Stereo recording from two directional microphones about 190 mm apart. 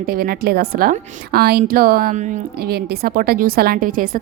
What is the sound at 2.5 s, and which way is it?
A woman's voice, 55° right (ahead or behind).